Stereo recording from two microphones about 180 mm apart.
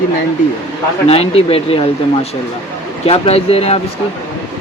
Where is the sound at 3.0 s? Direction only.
35° left (ahead or behind).